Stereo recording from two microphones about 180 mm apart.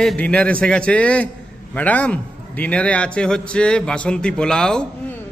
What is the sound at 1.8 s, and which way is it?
A man's voice, 10° left (ahead or behind).